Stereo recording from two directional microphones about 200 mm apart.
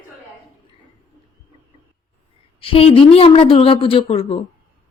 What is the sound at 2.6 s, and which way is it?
A woman's voice, 30° left (ahead or behind).